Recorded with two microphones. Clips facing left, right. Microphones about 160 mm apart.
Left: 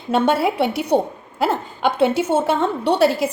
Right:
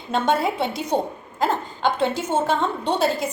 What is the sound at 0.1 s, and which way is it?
A woman's voice, 65° left (ahead or behind).